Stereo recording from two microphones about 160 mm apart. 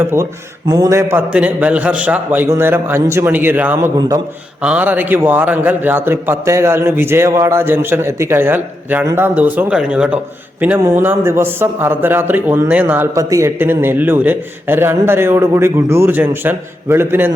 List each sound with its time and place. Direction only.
0.0 s a man's voice: 15° right (ahead or behind)